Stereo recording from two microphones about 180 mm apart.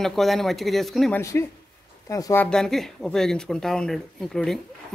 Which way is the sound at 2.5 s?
5° left (ahead or behind).